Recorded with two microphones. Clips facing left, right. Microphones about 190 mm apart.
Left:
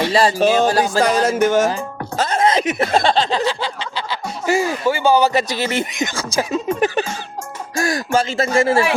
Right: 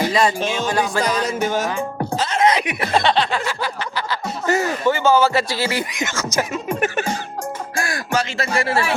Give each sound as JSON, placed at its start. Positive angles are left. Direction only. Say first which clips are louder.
{"t": 0.0, "sound": "music", "louder": "left 3 dB", "side_deg": 30}
{"t": 1.2, "sound": "music", "louder": "left 6 dB", "side_deg": 90}
{"t": 2.1, "sound": "a sound", "louder": "left 4 dB", "side_deg": 45}
{"t": 2.4, "sound": "snicker", "louder": "even", "side_deg": 30}
{"t": 2.8, "sound": "chuckle", "louder": "even", "side_deg": 45}
{"t": 3.2, "sound": "a man's voice", "louder": "left 5 dB", "side_deg": 25}
{"t": 4.4, "sound": "speech", "louder": "left 1 dB", "side_deg": 10}
{"t": 7.9, "sound": "a man's voice", "louder": "left 6 dB", "side_deg": 20}